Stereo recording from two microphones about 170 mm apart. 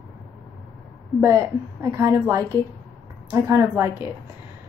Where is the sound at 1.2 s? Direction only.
15° right (ahead or behind).